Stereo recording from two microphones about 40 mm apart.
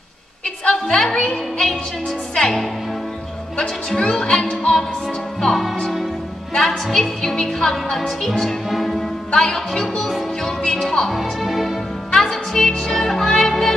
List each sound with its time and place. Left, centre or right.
0.7 s a sound: centre
1.3 s music: centre
2.3 s a woman's voice: centre
5.4 s music: centre
6.5 s a woman's voice: centre
8.6 s music: centre
10.7 s a woman's voice: centre
11.1 s speech: centre
12.2 s music: centre